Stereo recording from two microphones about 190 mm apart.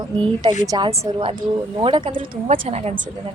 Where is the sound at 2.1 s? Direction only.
45° right (ahead or behind).